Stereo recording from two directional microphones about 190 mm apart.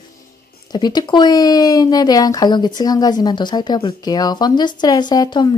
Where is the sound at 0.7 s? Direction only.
25° left (ahead or behind).